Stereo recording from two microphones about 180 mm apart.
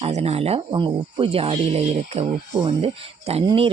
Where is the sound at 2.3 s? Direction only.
50° right (ahead or behind).